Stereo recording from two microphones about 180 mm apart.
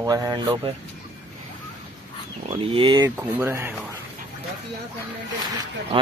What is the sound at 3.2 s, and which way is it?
Speech, 15° right (ahead or behind).